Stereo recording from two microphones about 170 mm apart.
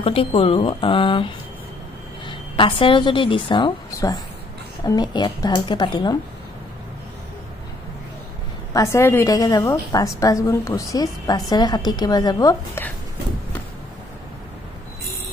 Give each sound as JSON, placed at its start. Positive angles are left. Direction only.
{"t": 0.0, "sound": "a woman's voice", "side_deg": 35}
{"t": 8.7, "sound": "a woman's voice", "side_deg": 15}